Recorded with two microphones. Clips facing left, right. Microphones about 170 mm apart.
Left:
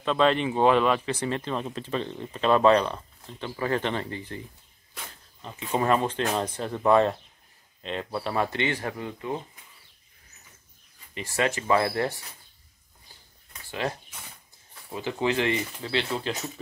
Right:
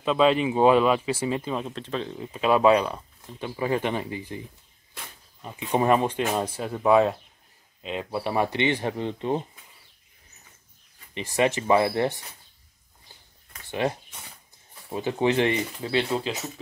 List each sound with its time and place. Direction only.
0.0 s speech: 5° right (ahead or behind); by 9.4 s 30° right (ahead or behind)
11.1 s speech: 20° right (ahead or behind)
13.7 s speech: 20° right (ahead or behind)